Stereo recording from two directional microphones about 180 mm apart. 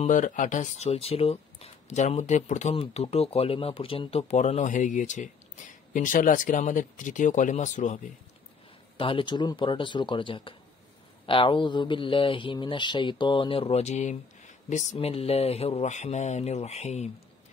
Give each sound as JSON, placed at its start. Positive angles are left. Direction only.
{"t": 0.0, "sound": "speech", "side_deg": 45}
{"t": 8.9, "sound": "speech", "side_deg": 30}